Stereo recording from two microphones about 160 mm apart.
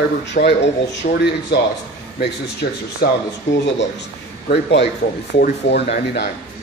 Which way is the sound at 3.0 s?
75° left (ahead or behind).